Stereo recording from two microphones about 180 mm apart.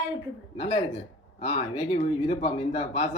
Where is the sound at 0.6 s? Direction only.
35° left (ahead or behind).